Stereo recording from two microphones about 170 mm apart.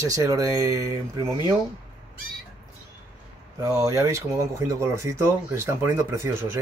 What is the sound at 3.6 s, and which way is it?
Speech, 20° right (ahead or behind).